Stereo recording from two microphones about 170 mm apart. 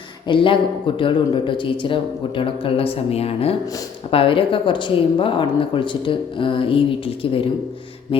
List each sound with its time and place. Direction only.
0.3 s speech: 30° left (ahead or behind)